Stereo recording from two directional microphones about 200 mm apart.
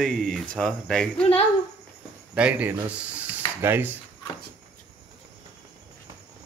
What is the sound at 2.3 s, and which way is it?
Speech, 5° right (ahead or behind).